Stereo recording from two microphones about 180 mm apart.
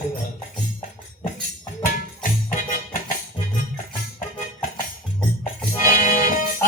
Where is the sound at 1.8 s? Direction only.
50° left (ahead or behind).